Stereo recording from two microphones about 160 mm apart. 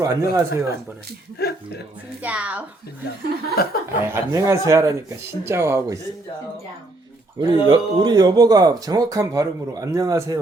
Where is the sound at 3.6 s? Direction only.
75° left (ahead or behind).